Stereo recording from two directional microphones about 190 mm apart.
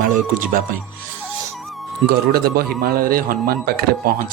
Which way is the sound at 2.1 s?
55° right (ahead or behind).